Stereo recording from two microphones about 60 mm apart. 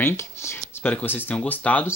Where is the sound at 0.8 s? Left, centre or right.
Left.